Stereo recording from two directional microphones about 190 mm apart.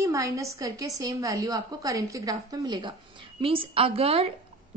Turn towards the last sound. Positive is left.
turn(degrees=-30)  # may be behind; listen again after turning